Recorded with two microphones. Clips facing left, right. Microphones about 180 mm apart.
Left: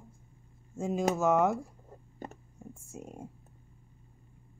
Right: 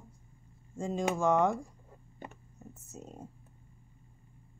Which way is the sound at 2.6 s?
10° left (ahead or behind).